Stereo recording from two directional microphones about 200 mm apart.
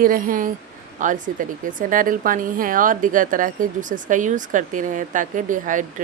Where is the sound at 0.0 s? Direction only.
45° right (ahead or behind).